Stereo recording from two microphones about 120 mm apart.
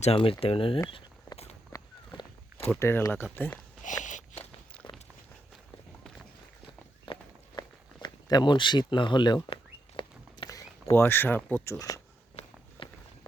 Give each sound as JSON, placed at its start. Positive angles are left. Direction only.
{"t": 0.0, "sound": "speech", "side_deg": 55}
{"t": 1.7, "sound": "a sound", "side_deg": 30}
{"t": 2.6, "sound": "speech", "side_deg": 20}
{"t": 3.8, "sound": "biting", "side_deg": 90}
{"t": 4.8, "sound": "walk", "side_deg": 35}
{"t": 7.0, "sound": "walk", "side_deg": 40}
{"t": 8.0, "sound": "a sound", "side_deg": 35}
{"t": 10.8, "sound": "speech", "side_deg": 20}
{"t": 12.4, "sound": "walk", "side_deg": 60}
{"t": 12.8, "sound": "walk", "side_deg": 45}